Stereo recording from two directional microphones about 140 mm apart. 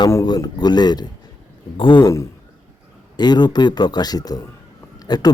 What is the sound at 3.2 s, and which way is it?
A man's voice, 30° left (ahead or behind).